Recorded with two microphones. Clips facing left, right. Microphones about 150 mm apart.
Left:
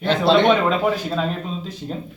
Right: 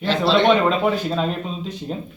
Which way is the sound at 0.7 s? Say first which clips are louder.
Even; centre (ahead or behind).